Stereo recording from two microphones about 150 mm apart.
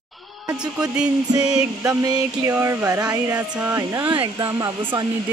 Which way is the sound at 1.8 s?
25° right (ahead or behind).